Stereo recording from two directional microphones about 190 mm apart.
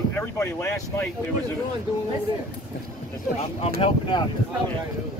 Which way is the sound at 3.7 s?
30° left (ahead or behind).